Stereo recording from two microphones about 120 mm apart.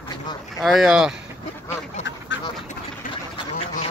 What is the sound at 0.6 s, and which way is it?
Speech, centre (ahead or behind).